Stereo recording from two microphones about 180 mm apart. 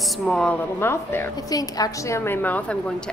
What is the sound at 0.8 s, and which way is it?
A woman's voice, 15° left (ahead or behind).